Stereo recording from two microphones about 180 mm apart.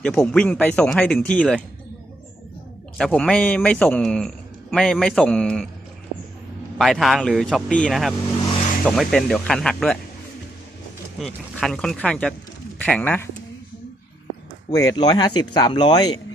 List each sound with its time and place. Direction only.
0.0 s speech: 5° left (ahead or behind)
3.0 s speech: 5° left (ahead or behind)
6.7 s speech: centre (ahead or behind)
11.2 s speech: centre (ahead or behind)
14.7 s speech: 20° left (ahead or behind)